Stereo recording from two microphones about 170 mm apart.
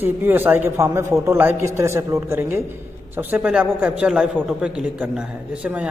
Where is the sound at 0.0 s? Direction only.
10° right (ahead or behind).